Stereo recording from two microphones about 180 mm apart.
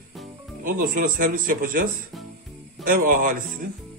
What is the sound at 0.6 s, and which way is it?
Speech, 50° right (ahead or behind).